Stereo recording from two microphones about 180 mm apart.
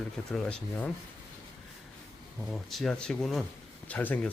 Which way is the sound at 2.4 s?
Centre (ahead or behind).